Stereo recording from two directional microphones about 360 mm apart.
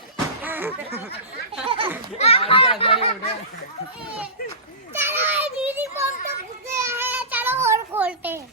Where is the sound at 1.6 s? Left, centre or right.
Centre.